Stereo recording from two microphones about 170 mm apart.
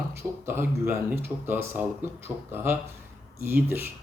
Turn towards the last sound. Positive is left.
turn(degrees=-15)  # may be behind; listen again after turning